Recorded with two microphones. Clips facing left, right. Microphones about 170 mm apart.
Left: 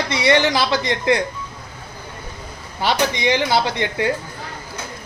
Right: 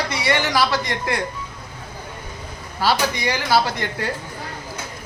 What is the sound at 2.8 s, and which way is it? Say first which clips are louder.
A man's voice: left 1 dB; 20° left (ahead or behind).